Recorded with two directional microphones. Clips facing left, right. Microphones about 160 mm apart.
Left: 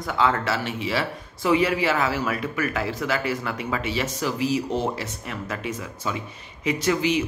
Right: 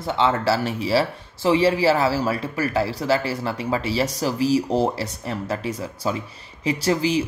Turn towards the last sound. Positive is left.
turn(degrees=-35)  # may be behind; listen again after turning